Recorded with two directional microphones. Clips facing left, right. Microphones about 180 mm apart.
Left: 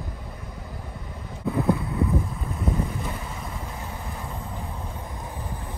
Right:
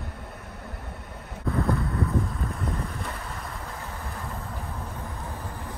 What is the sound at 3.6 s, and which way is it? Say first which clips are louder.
Vehicle: left 2 dB; 15° left (ahead or behind).